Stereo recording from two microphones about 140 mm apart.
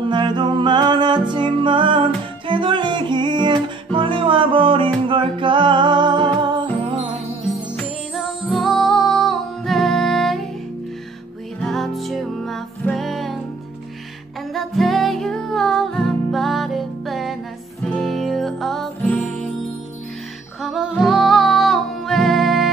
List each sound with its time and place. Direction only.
0.0 s music: 35° right (ahead or behind)
7.4 s music: centre (ahead or behind)
11.6 s music: centre (ahead or behind)
14.5 s music: centre (ahead or behind)
20.6 s music: centre (ahead or behind)